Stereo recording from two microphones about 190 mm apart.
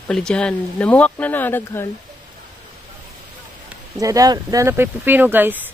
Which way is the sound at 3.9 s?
20° right (ahead or behind).